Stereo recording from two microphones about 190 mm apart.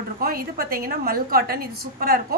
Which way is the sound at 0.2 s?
50° right (ahead or behind).